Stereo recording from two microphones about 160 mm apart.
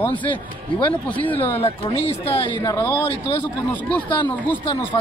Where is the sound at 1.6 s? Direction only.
35° left (ahead or behind).